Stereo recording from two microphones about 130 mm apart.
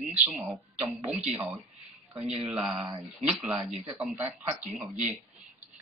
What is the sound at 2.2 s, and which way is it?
Speech, 50° right (ahead or behind).